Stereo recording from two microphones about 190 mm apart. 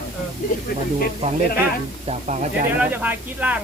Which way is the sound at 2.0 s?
35° right (ahead or behind).